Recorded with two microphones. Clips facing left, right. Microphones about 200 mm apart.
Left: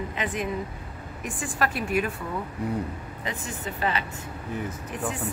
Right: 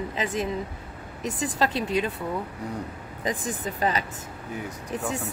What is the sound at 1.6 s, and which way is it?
Speech, 20° right (ahead or behind).